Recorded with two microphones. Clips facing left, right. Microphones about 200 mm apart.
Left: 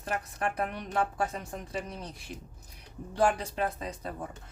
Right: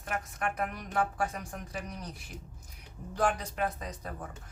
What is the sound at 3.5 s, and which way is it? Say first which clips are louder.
Speech: left 2 dB; 30° left (ahead or behind).